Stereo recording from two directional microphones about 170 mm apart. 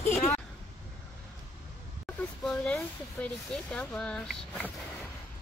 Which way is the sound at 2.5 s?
5° left (ahead or behind).